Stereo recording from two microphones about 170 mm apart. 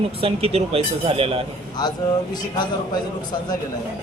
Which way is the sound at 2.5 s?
25° left (ahead or behind).